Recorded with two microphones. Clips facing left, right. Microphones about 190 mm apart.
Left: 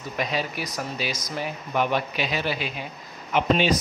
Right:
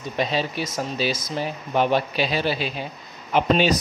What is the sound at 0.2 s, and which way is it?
Speech, 30° right (ahead or behind).